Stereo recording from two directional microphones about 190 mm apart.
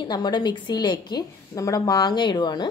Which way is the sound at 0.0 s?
20° left (ahead or behind).